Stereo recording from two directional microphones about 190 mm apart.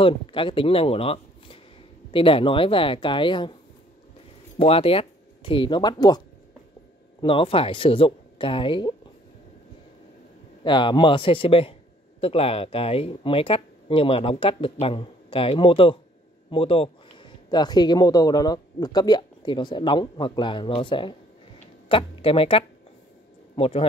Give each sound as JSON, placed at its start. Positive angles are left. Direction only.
{"t": 0.0, "sound": "speech", "side_deg": 25}
{"t": 4.6, "sound": "speech", "side_deg": 30}
{"t": 10.6, "sound": "speech", "side_deg": 25}